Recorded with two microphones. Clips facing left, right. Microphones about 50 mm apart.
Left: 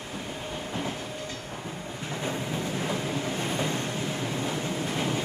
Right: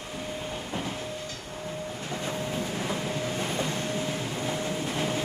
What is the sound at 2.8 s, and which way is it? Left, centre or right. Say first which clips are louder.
Train: left 1 dB; centre.